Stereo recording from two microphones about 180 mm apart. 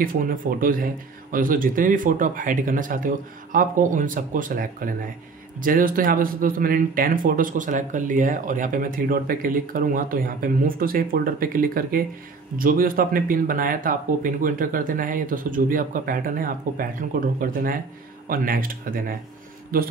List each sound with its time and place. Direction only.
0.0 s a man's voice: 50° right (ahead or behind)